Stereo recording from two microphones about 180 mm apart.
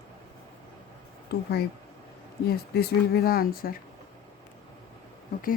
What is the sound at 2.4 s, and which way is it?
Speech, 60° left (ahead or behind).